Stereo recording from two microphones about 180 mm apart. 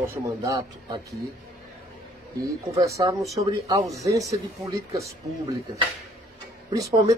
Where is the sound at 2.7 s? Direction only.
15° right (ahead or behind).